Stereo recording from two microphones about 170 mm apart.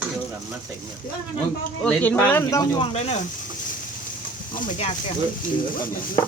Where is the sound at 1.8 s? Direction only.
10° left (ahead or behind); by 3.3 s 40° left (ahead or behind).